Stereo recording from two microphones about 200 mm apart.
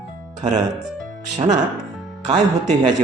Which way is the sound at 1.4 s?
35° right (ahead or behind).